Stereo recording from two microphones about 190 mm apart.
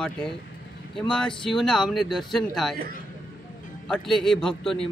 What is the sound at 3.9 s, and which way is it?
A man's voice, centre (ahead or behind).